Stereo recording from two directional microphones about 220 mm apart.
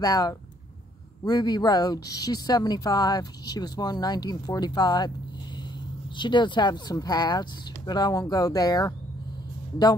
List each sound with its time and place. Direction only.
0.0 s a woman's voice: 15° left (ahead or behind)
6.1 s a woman's voice: 20° left (ahead or behind)